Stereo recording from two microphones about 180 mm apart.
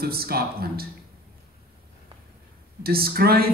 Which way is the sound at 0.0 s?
60° right (ahead or behind).